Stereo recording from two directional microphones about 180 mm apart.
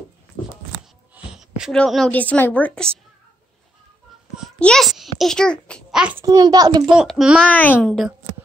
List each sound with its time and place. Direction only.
1.1 s a woman's voice: 5° right (ahead or behind)
4.4 s a child's voice: 5° left (ahead or behind)
6.2 s a child's voice: 20° right (ahead or behind)
6.9 s a child's voice: 5° right (ahead or behind)